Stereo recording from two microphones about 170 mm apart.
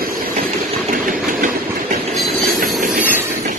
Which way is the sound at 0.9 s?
50° right (ahead or behind).